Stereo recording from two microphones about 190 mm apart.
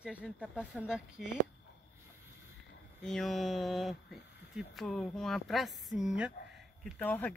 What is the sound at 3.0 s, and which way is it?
Speech, centre (ahead or behind).